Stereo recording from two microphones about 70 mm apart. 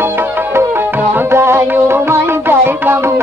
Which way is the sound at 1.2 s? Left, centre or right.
Right.